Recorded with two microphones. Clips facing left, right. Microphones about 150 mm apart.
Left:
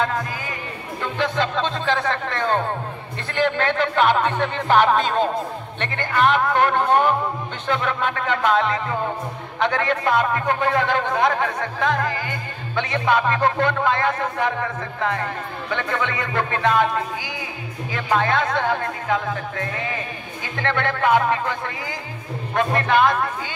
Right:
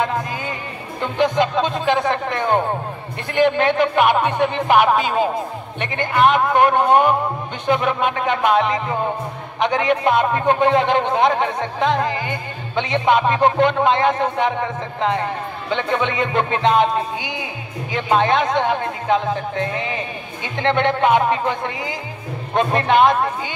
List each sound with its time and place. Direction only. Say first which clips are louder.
1.0 s a man's voice: right 5 dB; 20° right (ahead or behind)